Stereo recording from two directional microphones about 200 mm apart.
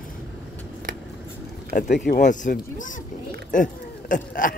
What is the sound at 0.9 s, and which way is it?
Scissors, 45° right (ahead or behind).